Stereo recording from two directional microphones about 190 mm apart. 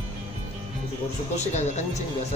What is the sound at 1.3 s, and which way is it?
Speech, 35° left (ahead or behind).